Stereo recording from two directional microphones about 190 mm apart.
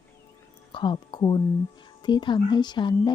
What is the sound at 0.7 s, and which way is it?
Speech, 25° left (ahead or behind).